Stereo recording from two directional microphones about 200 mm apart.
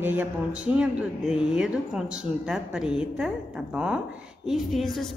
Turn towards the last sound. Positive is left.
turn(degrees=0)  # may be behind; listen again after turning